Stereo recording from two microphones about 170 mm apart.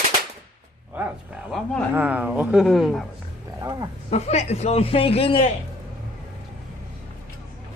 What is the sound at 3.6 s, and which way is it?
Roaring cats, 20° right (ahead or behind).